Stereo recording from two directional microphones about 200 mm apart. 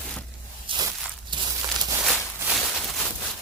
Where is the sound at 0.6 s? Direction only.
25° right (ahead or behind).